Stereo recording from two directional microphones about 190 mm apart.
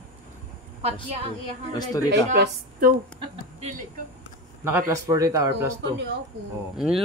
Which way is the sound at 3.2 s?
35° right (ahead or behind).